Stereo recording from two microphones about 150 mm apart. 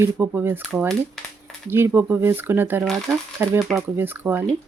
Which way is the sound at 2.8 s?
Centre (ahead or behind).